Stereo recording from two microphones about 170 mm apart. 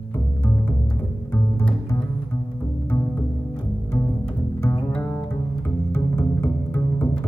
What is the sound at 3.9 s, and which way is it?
Bowed string instrument, 15° left (ahead or behind).